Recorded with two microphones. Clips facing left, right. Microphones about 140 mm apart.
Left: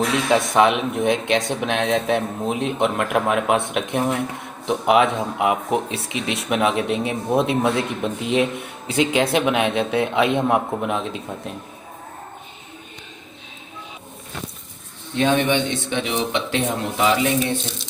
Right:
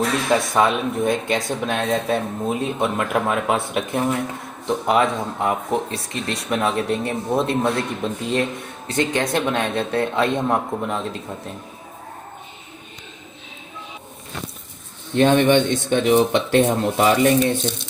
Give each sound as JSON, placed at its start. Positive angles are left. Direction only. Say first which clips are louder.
{"t": 0.3, "sound": "speech", "louder": "left 2 dB", "side_deg": 0}
{"t": 15.1, "sound": "speech", "louder": "right 4 dB", "side_deg": -50}